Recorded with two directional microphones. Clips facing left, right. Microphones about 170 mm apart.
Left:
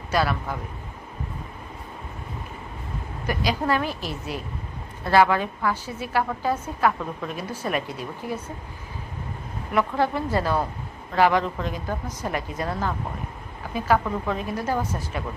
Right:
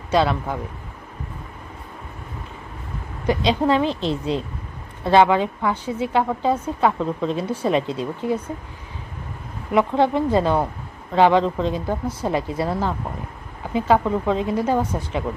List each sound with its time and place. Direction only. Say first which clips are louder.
0.1 s a woman's voice: right 5 dB; 20° right (ahead or behind)
3.3 s a woman's voice: right 6 dB; 20° right (ahead or behind)
9.7 s a woman's voice: right 5 dB; 20° right (ahead or behind)